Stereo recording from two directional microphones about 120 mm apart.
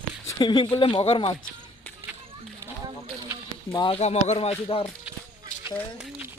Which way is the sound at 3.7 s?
45° left (ahead or behind).